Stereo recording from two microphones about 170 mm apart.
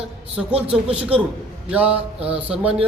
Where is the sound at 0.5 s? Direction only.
35° right (ahead or behind).